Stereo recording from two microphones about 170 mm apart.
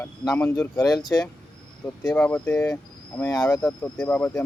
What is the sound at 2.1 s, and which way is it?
Speech, 10° left (ahead or behind).